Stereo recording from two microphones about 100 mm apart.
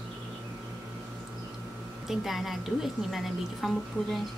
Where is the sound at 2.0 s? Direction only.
Centre (ahead or behind).